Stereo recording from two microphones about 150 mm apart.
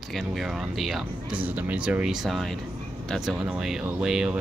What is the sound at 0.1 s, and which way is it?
Speech, centre (ahead or behind).